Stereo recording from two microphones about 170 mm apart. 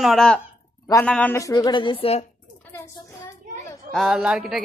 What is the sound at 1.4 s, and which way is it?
Speech, 20° left (ahead or behind).